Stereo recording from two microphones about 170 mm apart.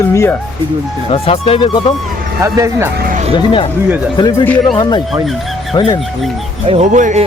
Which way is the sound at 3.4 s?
30° left (ahead or behind).